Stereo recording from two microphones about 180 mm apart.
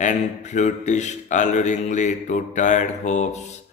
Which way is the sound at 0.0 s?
40° left (ahead or behind).